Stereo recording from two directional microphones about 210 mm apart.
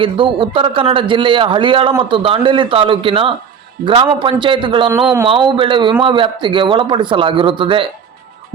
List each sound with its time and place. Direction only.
0.0 s a man's voice: 25° right (ahead or behind)